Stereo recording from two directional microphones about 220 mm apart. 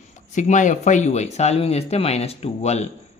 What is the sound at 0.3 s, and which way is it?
Speech, 35° left (ahead or behind).